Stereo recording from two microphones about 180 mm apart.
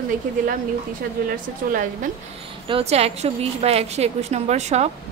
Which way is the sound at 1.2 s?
50° right (ahead or behind).